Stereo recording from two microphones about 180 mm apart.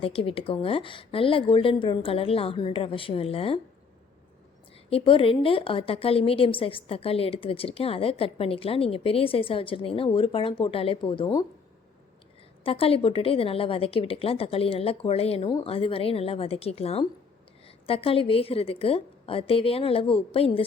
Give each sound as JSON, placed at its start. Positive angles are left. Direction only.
{"t": 0.0, "sound": "a woman's voice", "side_deg": 30}
{"t": 4.9, "sound": "a woman's voice", "side_deg": 30}
{"t": 12.6, "sound": "a woman's voice", "side_deg": 30}